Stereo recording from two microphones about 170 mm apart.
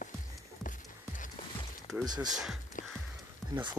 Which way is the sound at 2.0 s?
25° right (ahead or behind).